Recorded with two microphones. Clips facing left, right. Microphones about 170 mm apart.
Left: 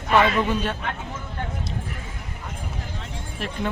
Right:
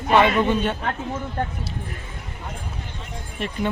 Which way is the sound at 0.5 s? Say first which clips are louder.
Right 3 dB; centre (ahead or behind).